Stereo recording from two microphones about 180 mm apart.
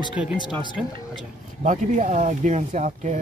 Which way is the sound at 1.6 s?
45° right (ahead or behind).